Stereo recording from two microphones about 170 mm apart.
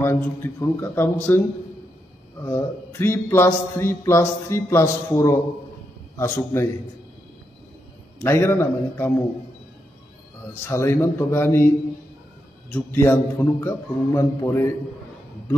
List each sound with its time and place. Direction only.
0.0 s a man's voice: 15° left (ahead or behind)
2.4 s a man's voice: 15° left (ahead or behind)
8.2 s a man's voice: 15° left (ahead or behind)
10.7 s a man's voice: 15° left (ahead or behind)
12.7 s a man's voice: 15° left (ahead or behind)